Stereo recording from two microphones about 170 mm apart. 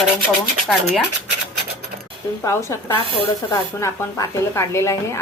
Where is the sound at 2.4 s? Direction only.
15° left (ahead or behind).